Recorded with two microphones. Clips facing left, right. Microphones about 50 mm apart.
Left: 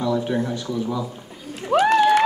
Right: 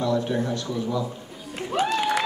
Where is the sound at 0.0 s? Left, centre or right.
Centre.